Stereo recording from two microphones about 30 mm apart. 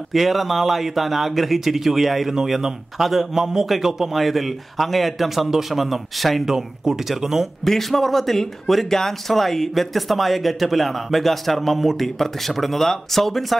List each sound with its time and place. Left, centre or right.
0.1 s a man's voice: centre
4.2 s speech: centre
6.4 s a man's voice: centre
7.6 s speech: centre